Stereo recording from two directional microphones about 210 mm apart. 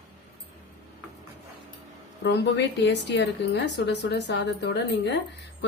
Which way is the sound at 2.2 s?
55° left (ahead or behind).